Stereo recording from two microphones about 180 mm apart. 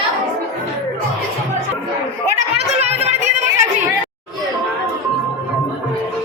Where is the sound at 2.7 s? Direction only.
35° right (ahead or behind).